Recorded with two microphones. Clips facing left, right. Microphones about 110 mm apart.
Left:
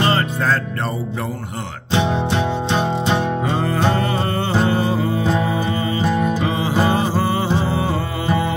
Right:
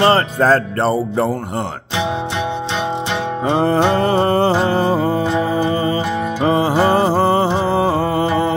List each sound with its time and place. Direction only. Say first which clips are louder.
0.0 s music: right 5 dB; 35° right (ahead or behind)
3.4 s music: right 10 dB; 30° right (ahead or behind)